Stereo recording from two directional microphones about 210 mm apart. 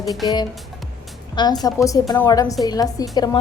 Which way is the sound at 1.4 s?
20° left (ahead or behind).